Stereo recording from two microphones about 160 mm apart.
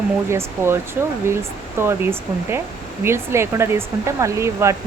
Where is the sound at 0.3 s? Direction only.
15° right (ahead or behind).